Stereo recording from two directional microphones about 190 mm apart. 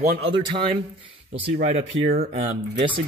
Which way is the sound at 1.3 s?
35° right (ahead or behind).